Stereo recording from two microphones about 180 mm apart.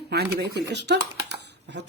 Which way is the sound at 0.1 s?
65° right (ahead or behind).